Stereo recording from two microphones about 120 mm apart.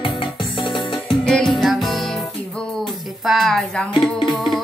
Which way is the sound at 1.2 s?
5° left (ahead or behind).